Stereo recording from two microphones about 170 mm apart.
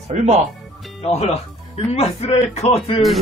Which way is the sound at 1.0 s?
35° left (ahead or behind).